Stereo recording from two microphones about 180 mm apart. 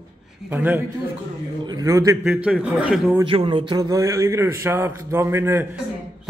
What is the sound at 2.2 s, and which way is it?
Speech, 5° right (ahead or behind).